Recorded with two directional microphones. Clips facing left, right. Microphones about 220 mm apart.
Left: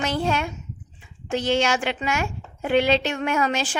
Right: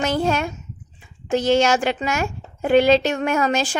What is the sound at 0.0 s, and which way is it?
A woman's voice, 45° right (ahead or behind).